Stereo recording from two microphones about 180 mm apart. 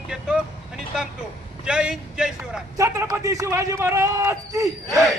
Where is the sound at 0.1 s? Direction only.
5° right (ahead or behind).